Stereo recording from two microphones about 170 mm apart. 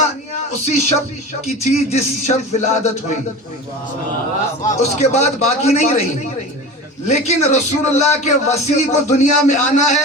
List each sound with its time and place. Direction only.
0.5 s speech: 40° left (ahead or behind)
4.6 s speech: 40° left (ahead or behind)
7.1 s speech: 40° left (ahead or behind)